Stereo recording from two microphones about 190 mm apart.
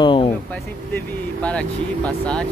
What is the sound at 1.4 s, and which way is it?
Speech, 5° left (ahead or behind).